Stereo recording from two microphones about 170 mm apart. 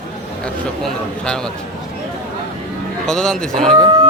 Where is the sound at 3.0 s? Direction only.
5° left (ahead or behind).